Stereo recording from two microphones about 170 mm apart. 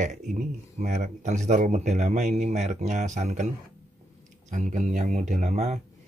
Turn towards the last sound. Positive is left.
turn(degrees=-40)  # may be behind; listen again after turning